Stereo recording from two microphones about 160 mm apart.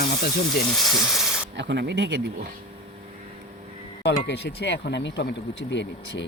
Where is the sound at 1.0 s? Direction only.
Centre (ahead or behind).